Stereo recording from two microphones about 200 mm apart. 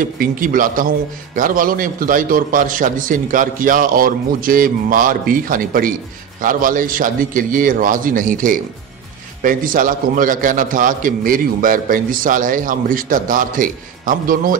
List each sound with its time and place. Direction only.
0.0 s a man's voice: 45° right (ahead or behind)